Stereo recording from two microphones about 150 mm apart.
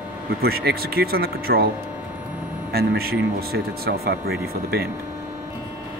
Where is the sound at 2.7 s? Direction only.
90° right.